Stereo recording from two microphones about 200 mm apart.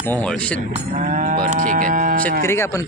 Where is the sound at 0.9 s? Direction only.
40° right (ahead or behind).